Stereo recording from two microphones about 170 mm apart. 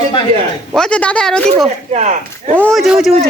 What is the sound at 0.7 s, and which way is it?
Speech, 5° left (ahead or behind).